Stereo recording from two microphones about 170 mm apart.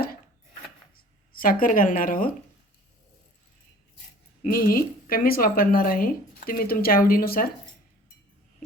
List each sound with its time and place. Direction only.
1.3 s speech: 55° left (ahead or behind)
4.5 s speech: 60° left (ahead or behind)